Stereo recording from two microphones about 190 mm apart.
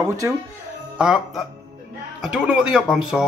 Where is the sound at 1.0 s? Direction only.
5° right (ahead or behind).